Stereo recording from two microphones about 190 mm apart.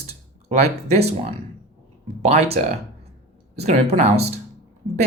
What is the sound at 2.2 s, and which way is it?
Speech, 35° right (ahead or behind).